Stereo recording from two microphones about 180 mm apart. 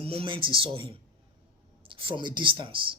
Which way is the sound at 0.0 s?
30° right (ahead or behind).